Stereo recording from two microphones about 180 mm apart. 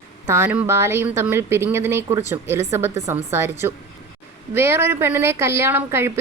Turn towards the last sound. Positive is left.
turn(degrees=-10)  # may be behind; listen again after turning